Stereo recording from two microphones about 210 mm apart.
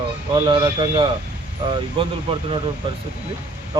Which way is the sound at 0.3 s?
20° right (ahead or behind).